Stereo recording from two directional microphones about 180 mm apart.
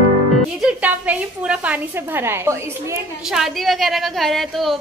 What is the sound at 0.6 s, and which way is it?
A woman's voice, 10° right (ahead or behind).